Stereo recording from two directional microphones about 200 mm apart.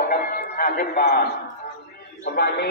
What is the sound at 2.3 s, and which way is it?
Speech, 55° left (ahead or behind).